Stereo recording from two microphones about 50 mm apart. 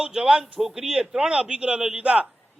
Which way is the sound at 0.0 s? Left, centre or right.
Centre.